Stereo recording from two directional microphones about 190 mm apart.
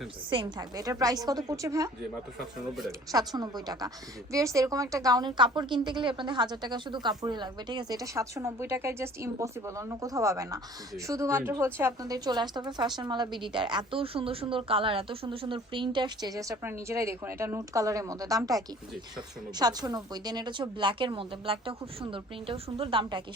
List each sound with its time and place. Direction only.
0.3 s a woman's voice: 20° right (ahead or behind)
3.1 s a woman's voice: 20° right (ahead or behind)